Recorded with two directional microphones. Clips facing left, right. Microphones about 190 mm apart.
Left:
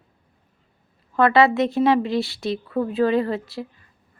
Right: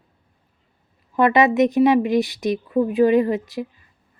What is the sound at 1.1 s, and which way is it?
Speech, 15° right (ahead or behind).